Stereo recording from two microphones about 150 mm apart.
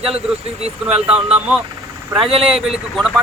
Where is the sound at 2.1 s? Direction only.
20° right (ahead or behind).